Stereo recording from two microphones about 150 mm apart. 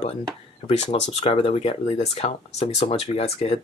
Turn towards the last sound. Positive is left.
turn(degrees=45)  # may be behind; listen again after turning